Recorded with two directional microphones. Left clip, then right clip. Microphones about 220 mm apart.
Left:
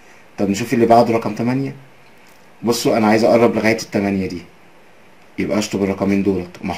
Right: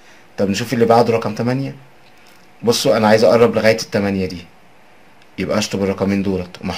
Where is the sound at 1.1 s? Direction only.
50° right (ahead or behind).